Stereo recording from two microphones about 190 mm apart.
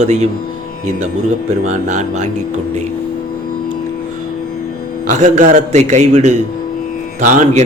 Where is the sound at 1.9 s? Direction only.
40° right (ahead or behind).